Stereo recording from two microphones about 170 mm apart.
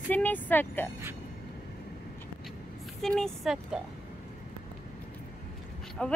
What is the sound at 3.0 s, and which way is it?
Speech, 5° left (ahead or behind).